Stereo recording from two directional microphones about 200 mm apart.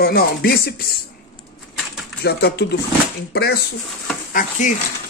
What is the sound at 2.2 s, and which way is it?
Speech, 55° left (ahead or behind).